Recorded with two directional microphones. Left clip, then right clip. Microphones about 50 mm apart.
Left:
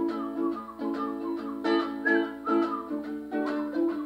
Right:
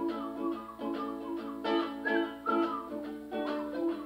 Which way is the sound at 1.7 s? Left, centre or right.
Centre.